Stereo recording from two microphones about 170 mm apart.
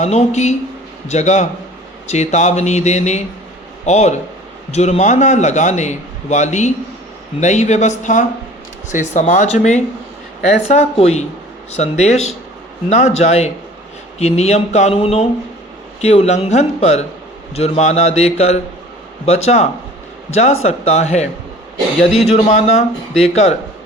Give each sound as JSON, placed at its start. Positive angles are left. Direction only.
{"t": 0.0, "sound": "a man's voice", "side_deg": 40}